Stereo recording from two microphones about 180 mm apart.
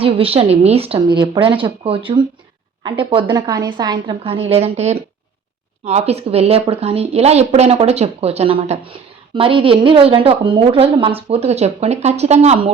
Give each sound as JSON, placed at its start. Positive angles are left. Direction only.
{"t": 0.0, "sound": "a woman's voice", "side_deg": -30}